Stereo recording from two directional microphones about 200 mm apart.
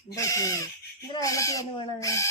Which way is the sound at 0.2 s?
15° left (ahead or behind).